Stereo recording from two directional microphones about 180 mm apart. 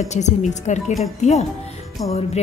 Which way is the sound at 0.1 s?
40° left (ahead or behind).